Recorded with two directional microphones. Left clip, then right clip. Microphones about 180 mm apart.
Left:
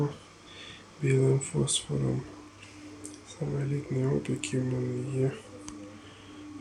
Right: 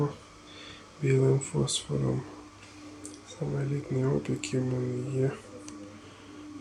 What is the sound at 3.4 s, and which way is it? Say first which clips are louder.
Speech: even; 10° right (ahead or behind).